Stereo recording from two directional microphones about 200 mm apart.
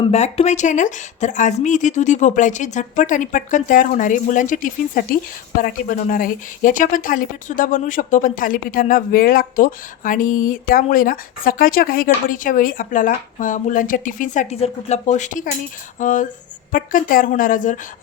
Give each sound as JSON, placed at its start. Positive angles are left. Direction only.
{"t": 0.0, "sound": "a woman's voice", "side_deg": 30}